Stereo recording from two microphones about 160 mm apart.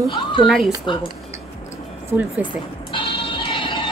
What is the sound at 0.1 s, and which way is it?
Speech, 30° left (ahead or behind).